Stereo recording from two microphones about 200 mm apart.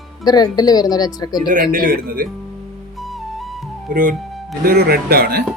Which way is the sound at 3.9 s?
45° right (ahead or behind).